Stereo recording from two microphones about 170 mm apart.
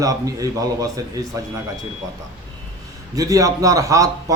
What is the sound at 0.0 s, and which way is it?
Speech, 20° right (ahead or behind).